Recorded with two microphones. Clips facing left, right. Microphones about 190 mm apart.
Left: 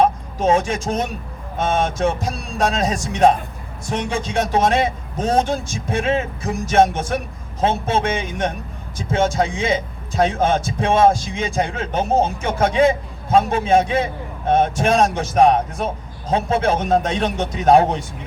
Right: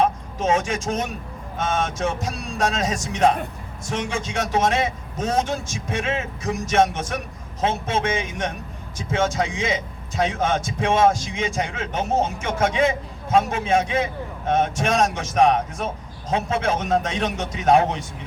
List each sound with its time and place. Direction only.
0.0 s a man's voice: 35° left (ahead or behind)